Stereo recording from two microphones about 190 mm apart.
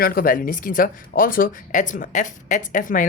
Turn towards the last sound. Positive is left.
turn(degrees=45)  # may be behind; listen again after turning